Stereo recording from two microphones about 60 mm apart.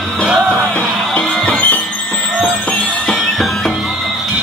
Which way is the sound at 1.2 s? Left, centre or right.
Left.